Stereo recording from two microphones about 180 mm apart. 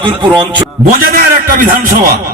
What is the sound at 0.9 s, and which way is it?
A man's voice, 50° right (ahead or behind).